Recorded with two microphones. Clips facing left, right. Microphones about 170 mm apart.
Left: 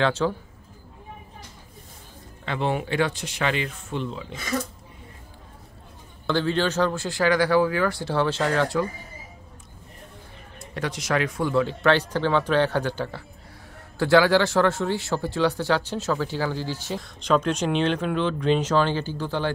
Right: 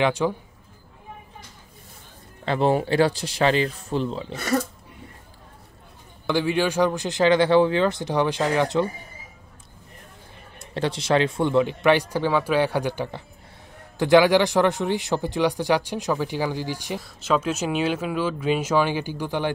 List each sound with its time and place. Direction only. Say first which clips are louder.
0.0 s speech: right 1 dB; 15° right (ahead or behind)
2.4 s speech: right 5 dB; 35° right (ahead or behind)
4.3 s speech: right 5 dB; 70° right (ahead or behind)
6.2 s speech: right 1 dB; 10° right (ahead or behind)
10.7 s speech: right 4 dB; 30° right (ahead or behind)